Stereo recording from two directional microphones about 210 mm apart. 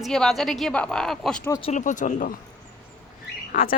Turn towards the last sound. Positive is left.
turn(degrees=40)  # may be behind; listen again after turning